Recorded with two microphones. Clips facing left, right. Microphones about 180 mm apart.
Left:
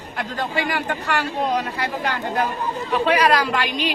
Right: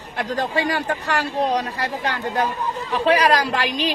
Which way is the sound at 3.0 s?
35° right (ahead or behind).